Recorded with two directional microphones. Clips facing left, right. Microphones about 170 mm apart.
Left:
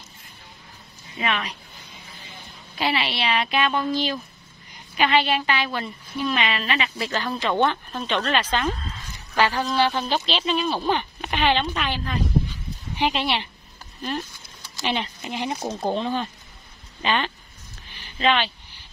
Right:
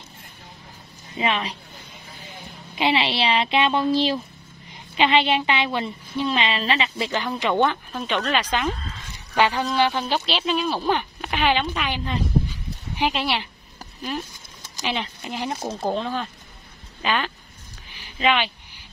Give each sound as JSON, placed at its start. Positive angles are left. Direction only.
{"t": 1.1, "sound": "a woman's voice", "side_deg": -30}
{"t": 2.8, "sound": "a woman's voice", "side_deg": -25}
{"t": 7.3, "sound": "speech", "side_deg": -15}
{"t": 13.0, "sound": "speech", "side_deg": -5}
{"t": 14.9, "sound": "speech", "side_deg": 0}
{"t": 18.2, "sound": "a sound", "side_deg": -10}